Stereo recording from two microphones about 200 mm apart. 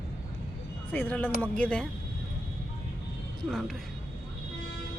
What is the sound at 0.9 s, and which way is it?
Speech, 10° left (ahead or behind).